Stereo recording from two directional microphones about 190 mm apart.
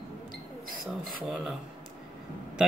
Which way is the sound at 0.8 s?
5° right (ahead or behind).